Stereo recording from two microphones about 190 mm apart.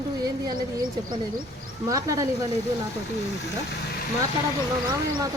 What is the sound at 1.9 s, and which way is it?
Speech, 15° right (ahead or behind).